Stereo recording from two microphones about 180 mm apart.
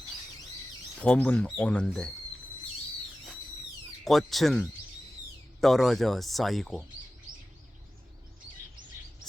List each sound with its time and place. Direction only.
0.9 s speech: 5° left (ahead or behind)
4.0 s speech: centre (ahead or behind)